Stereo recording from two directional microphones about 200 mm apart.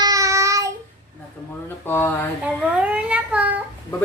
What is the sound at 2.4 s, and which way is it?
A child's voice, 5° right (ahead or behind).